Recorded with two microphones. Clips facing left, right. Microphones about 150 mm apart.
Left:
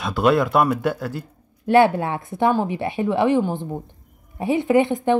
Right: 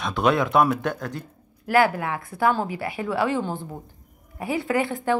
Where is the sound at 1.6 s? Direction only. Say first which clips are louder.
Left 5 dB; 25° left (ahead or behind).